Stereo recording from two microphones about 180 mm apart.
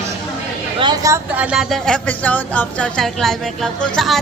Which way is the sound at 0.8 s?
20° right (ahead or behind).